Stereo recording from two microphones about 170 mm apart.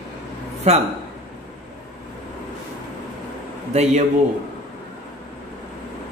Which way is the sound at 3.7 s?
45° right (ahead or behind).